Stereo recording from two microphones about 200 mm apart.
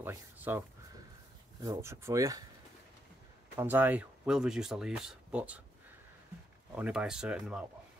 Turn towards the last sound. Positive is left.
turn(degrees=-5)  # may be behind; listen again after turning